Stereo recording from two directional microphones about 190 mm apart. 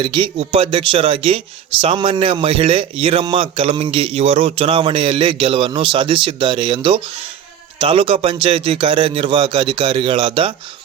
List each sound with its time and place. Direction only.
0.0 s a man's voice: 25° right (ahead or behind)